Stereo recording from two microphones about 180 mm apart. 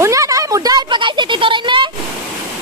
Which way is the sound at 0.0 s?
15° right (ahead or behind).